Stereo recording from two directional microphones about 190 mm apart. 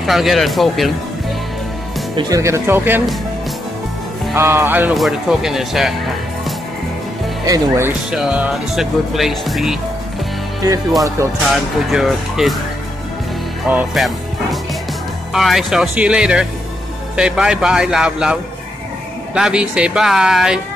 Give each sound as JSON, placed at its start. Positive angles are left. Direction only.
{"t": 0.0, "sound": "speech", "side_deg": 0}
{"t": 2.1, "sound": "speech", "side_deg": -20}
{"t": 4.4, "sound": "speech", "side_deg": -10}
{"t": 7.4, "sound": "speech", "side_deg": -15}
{"t": 8.1, "sound": "speech", "side_deg": -5}
{"t": 11.0, "sound": "speech", "side_deg": -15}
{"t": 11.9, "sound": "speech", "side_deg": 0}
{"t": 13.7, "sound": "speech", "side_deg": -5}